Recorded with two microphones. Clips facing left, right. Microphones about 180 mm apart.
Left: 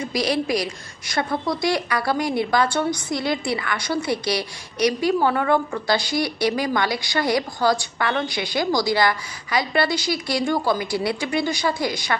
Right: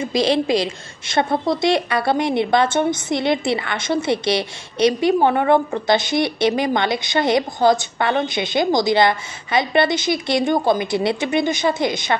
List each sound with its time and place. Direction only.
0.0 s a woman's voice: 25° right (ahead or behind)